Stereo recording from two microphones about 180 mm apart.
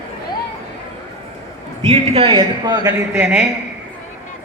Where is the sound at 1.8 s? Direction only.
30° right (ahead or behind).